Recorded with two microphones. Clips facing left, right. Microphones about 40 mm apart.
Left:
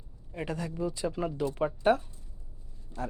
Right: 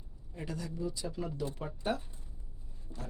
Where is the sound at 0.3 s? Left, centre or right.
Left.